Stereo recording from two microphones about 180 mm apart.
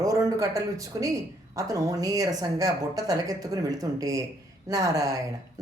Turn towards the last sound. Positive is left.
turn(degrees=-20)  # may be behind; listen again after turning